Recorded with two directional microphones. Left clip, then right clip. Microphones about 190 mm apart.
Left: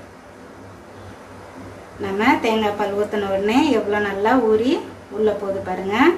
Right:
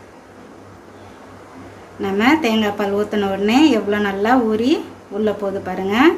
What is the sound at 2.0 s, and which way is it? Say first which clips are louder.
A woman's voice: right 2 dB; 45° right (ahead or behind).